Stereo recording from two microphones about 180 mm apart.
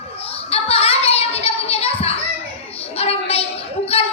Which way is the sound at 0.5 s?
35° left (ahead or behind).